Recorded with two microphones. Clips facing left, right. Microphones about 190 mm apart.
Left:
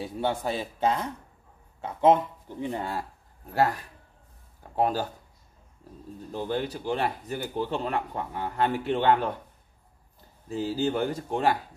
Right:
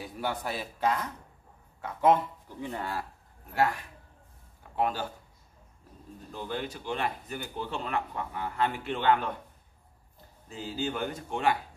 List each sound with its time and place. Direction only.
0.0 s speech: 25° left (ahead or behind)
3.5 s speech: 35° left (ahead or behind)
6.3 s speech: 35° left (ahead or behind)
10.5 s speech: 35° left (ahead or behind)